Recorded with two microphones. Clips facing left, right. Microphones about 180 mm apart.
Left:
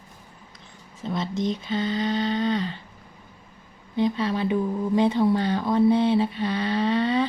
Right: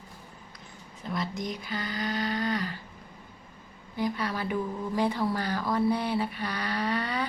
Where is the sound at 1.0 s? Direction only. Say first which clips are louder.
Left 6 dB; 25° left (ahead or behind).